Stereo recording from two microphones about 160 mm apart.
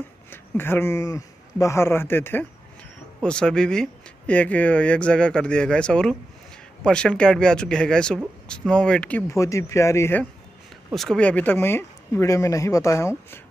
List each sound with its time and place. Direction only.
0.3 s speech: 15° left (ahead or behind)
9.3 s speech: 20° left (ahead or behind)
10.9 s speech: centre (ahead or behind); by 13.1 s 20° left (ahead or behind)